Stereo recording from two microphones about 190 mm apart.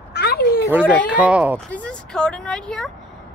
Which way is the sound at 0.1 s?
60° left (ahead or behind).